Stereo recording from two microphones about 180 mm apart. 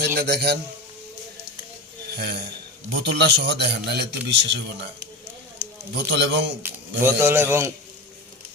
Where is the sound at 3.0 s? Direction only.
70° right (ahead or behind).